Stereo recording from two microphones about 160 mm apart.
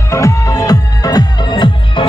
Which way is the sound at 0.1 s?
20° left (ahead or behind).